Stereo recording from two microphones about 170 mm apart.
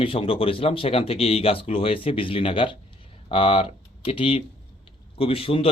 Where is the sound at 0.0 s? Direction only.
35° left (ahead or behind).